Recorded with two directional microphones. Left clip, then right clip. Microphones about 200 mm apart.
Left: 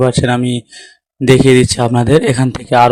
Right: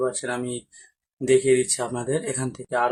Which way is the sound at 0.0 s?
40° left (ahead or behind).